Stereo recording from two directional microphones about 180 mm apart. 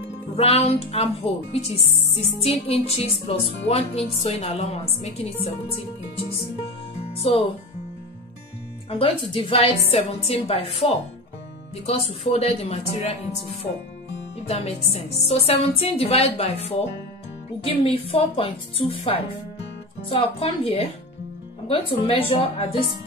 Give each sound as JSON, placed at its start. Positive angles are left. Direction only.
{"t": 0.4, "sound": "speech", "side_deg": 35}
{"t": 7.0, "sound": "music", "side_deg": 35}
{"t": 8.9, "sound": "speech", "side_deg": 30}
{"t": 17.6, "sound": "speech", "side_deg": 30}